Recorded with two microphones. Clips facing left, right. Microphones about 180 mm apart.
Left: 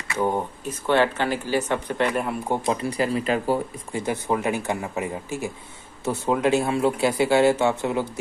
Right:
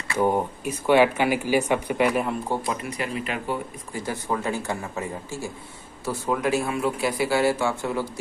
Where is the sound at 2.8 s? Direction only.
35° left (ahead or behind).